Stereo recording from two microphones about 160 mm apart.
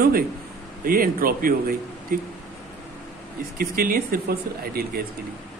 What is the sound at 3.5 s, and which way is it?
A man's voice, 70° right (ahead or behind).